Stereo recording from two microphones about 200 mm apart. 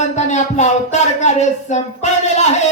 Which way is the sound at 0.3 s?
35° left (ahead or behind).